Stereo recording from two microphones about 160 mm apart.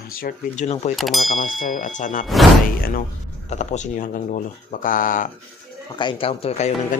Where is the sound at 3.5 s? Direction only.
45° left (ahead or behind).